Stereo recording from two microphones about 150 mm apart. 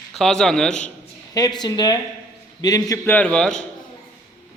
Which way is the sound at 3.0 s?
10° left (ahead or behind).